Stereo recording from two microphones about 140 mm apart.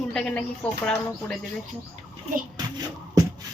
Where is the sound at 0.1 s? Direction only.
10° left (ahead or behind).